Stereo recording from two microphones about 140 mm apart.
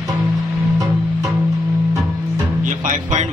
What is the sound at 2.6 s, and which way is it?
Music, 65° right (ahead or behind).